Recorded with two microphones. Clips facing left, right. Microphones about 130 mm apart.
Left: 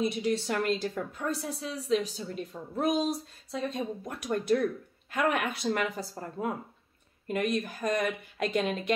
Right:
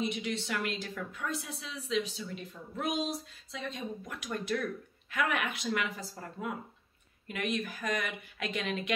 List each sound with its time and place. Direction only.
0.0 s speech: 35° left (ahead or behind)